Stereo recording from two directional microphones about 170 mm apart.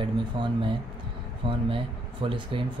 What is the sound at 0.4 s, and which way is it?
Speech, 30° right (ahead or behind).